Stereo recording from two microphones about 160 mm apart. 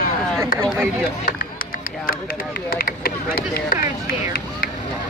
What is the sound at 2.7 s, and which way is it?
Speech, 70° left (ahead or behind).